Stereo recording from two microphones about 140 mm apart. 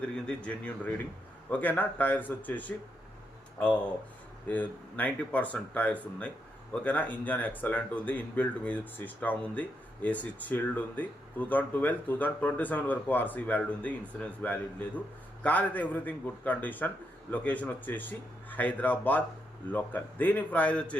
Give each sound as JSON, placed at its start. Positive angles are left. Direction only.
{"t": 0.3, "sound": "speech", "side_deg": 10}
{"t": 4.4, "sound": "speech", "side_deg": 10}